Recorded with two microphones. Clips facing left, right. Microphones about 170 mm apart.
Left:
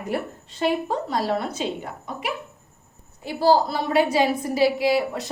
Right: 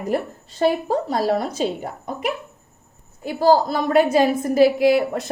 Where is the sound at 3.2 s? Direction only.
45° right (ahead or behind).